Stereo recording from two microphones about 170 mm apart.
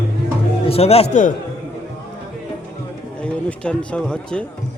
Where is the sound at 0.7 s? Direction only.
35° left (ahead or behind).